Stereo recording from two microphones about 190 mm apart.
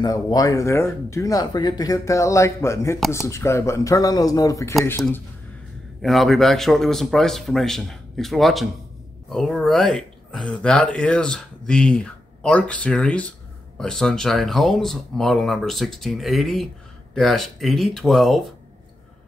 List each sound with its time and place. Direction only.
0.0 s speech: 20° left (ahead or behind)
6.0 s speech: centre (ahead or behind)